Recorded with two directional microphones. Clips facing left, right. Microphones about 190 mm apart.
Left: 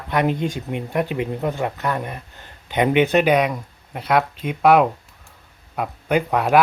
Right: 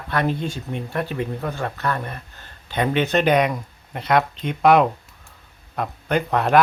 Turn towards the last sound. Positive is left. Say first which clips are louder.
# left 1 dB
turn(degrees=10)  # may be behind; listen again after turning